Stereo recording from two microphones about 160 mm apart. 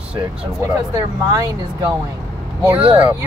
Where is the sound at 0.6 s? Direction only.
20° right (ahead or behind).